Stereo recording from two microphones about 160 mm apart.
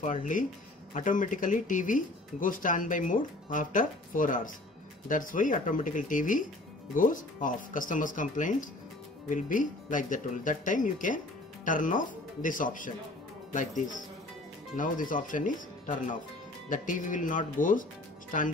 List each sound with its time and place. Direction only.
0.0 s speech: 55° left (ahead or behind)